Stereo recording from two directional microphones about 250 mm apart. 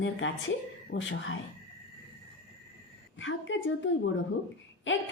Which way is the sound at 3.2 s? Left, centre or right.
Left.